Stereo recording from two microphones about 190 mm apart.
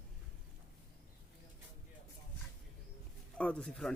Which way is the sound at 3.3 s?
5° left (ahead or behind).